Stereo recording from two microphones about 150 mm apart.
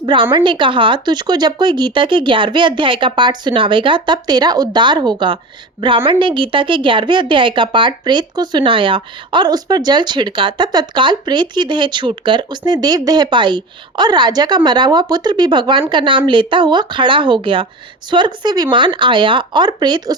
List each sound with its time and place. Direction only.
0.0 s a woman's voice: 35° right (ahead or behind)